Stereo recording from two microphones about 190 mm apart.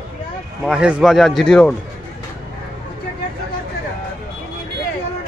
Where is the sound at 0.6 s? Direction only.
5° right (ahead or behind).